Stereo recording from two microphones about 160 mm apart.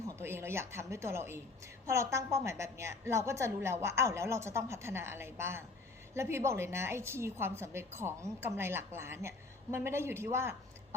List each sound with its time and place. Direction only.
0.2 s a woman's voice: 15° right (ahead or behind)